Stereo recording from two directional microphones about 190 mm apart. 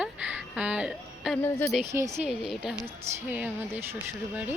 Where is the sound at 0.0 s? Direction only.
5° right (ahead or behind).